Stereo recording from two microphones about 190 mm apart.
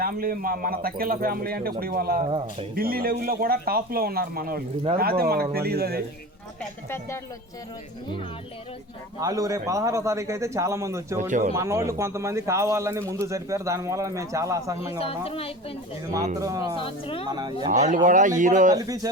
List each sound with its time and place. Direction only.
0.0 s speech: 50° right (ahead or behind)
2.2 s speech: 30° right (ahead or behind)
2.7 s speech: 50° right (ahead or behind)
6.6 s speech: 15° left (ahead or behind)
9.2 s speech: 15° right (ahead or behind)
11.2 s speech: 40° right (ahead or behind)
11.5 s speech: 15° right (ahead or behind)
14.9 s a woman's voice: 30° left (ahead or behind)
16.1 s speech: 15° right (ahead or behind)
16.7 s speech: 30° left (ahead or behind)
17.2 s speech: 20° right (ahead or behind)
17.7 s speech: 45° right (ahead or behind)
18.7 s speech: 20° right (ahead or behind)